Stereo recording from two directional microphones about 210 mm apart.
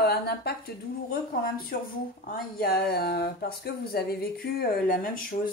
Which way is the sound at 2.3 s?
45° left (ahead or behind).